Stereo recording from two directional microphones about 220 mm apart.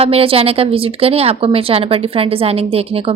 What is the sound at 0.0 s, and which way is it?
A woman's voice, 25° right (ahead or behind).